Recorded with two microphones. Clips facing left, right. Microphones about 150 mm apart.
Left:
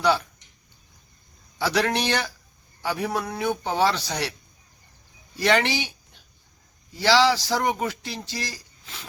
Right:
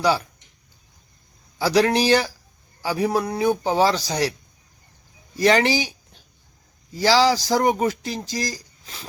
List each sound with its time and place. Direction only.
1.5 s speech: 35° right (ahead or behind)
5.4 s speech: 40° right (ahead or behind)